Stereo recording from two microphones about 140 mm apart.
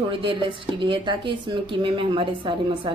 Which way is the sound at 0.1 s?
40° right (ahead or behind).